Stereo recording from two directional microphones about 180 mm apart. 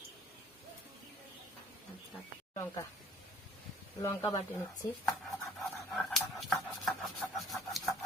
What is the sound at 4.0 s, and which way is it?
Speech, 20° left (ahead or behind).